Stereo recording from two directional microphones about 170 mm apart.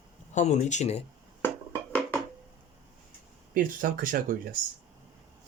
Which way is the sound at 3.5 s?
55° right (ahead or behind).